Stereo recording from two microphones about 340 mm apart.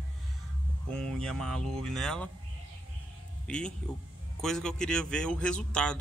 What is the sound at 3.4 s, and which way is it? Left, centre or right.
Speech, centre.